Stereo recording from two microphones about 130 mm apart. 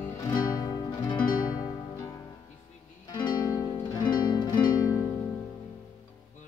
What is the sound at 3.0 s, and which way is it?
Music, 35° left (ahead or behind).